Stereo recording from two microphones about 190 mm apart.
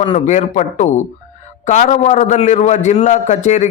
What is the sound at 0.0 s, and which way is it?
A man's voice, 35° left (ahead or behind).